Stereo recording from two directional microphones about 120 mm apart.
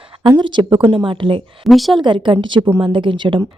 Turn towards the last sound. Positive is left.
turn(degrees=-45)  # may be behind; listen again after turning